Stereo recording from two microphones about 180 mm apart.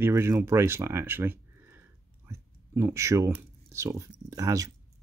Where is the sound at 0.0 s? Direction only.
15° right (ahead or behind).